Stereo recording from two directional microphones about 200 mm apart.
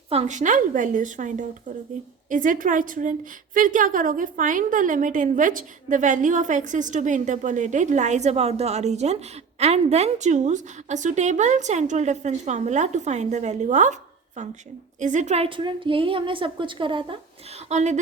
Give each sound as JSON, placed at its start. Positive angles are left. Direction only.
{"t": 0.1, "sound": "a woman's voice", "side_deg": -35}
{"t": 14.9, "sound": "a woman's voice", "side_deg": -35}
{"t": 17.7, "sound": "a woman's voice", "side_deg": -35}